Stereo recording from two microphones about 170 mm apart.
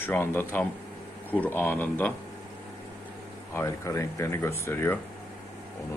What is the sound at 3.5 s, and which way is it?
Speech, 15° left (ahead or behind).